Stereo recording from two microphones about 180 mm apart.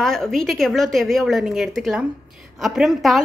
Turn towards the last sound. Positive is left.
turn(degrees=0)  # may be behind; listen again after turning